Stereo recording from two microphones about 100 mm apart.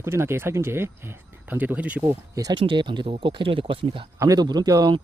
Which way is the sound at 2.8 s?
55° right (ahead or behind).